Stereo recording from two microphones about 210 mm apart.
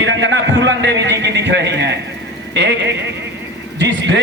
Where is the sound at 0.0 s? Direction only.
60° right (ahead or behind).